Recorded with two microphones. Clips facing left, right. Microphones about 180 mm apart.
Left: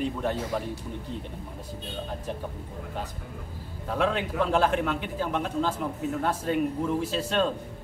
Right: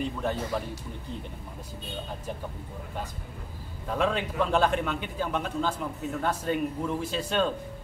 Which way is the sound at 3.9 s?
Centre (ahead or behind).